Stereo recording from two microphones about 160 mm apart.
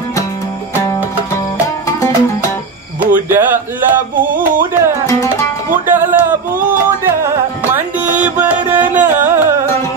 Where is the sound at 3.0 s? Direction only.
10° right (ahead or behind).